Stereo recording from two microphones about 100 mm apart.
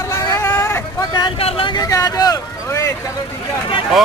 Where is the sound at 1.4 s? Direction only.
70° left (ahead or behind).